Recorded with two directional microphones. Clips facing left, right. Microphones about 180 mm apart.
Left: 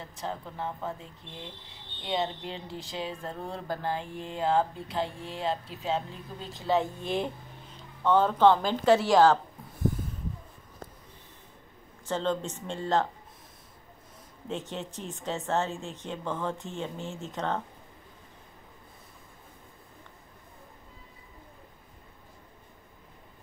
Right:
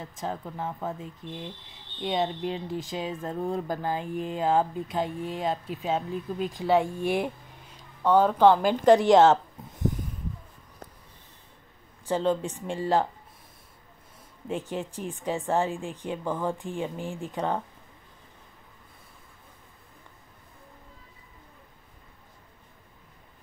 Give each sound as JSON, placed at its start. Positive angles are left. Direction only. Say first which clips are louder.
{"t": 0.1, "sound": "speech", "louder": "right 2 dB", "side_deg": -15}
{"t": 12.1, "sound": "speech", "louder": "right 4 dB", "side_deg": -10}
{"t": 14.5, "sound": "speech", "louder": "right 4 dB", "side_deg": -10}